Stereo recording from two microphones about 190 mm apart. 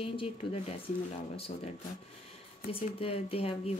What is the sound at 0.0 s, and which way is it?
Speech, 30° left (ahead or behind).